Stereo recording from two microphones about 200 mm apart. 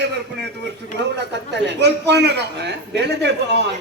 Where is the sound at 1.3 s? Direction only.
60° right (ahead or behind).